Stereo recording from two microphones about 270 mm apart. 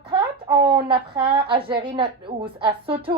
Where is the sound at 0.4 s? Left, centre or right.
Centre.